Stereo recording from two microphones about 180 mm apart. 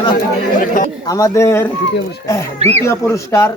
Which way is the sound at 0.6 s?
45° left (ahead or behind).